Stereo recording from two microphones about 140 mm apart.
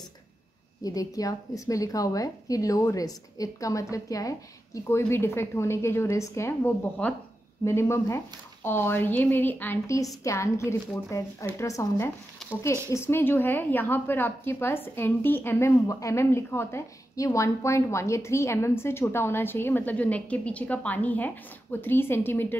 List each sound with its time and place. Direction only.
0.8 s a woman's voice: 25° left (ahead or behind)